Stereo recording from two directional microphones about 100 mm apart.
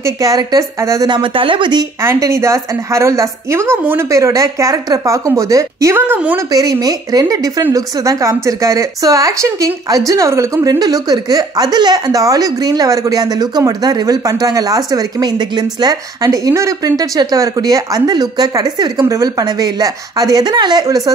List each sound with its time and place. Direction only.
0.0 s speech: 35° right (ahead or behind)
1.0 s speech: 55° right (ahead or behind)
2.0 s a woman's voice: 30° right (ahead or behind)
6.5 s speech: 40° right (ahead or behind)